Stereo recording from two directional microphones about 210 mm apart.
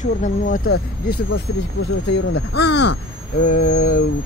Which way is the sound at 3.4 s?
40° left (ahead or behind).